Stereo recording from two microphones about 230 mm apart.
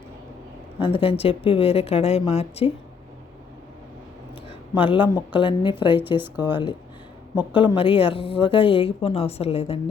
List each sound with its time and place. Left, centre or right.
0.8 s a woman's voice: left
4.7 s a woman's voice: left